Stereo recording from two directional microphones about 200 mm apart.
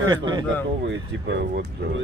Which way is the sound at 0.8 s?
60° right (ahead or behind).